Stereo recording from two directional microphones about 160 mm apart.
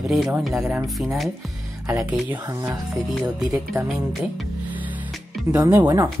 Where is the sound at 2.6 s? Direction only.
Centre (ahead or behind).